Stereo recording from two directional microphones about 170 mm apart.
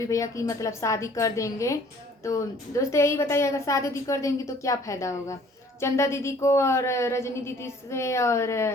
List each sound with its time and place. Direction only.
0.0 s a woman's voice: 20° left (ahead or behind)